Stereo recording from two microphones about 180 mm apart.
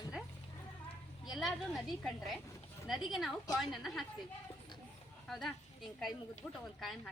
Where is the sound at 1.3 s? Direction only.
Centre (ahead or behind).